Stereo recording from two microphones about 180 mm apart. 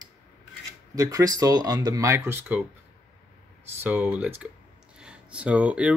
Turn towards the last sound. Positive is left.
turn(degrees=-5)  # may be behind; listen again after turning